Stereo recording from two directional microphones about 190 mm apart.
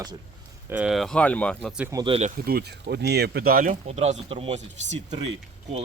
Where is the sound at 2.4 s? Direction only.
55° right (ahead or behind).